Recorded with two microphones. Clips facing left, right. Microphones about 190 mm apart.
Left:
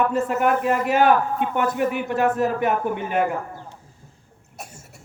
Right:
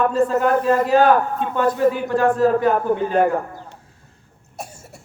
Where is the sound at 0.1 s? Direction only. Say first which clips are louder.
Right 3 dB; 20° left (ahead or behind).